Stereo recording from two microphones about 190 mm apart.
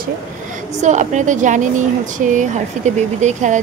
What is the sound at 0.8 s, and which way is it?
Speech, 40° right (ahead or behind).